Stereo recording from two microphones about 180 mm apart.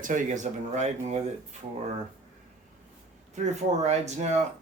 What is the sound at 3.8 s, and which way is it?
Speech, 40° right (ahead or behind).